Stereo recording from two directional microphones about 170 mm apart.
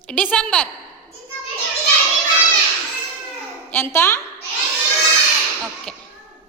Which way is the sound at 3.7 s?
15° left (ahead or behind).